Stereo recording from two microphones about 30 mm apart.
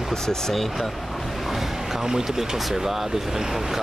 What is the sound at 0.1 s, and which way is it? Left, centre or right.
Speech, centre.